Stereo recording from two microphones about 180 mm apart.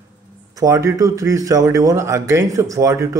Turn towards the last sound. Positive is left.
turn(degrees=-15)  # may be behind; listen again after turning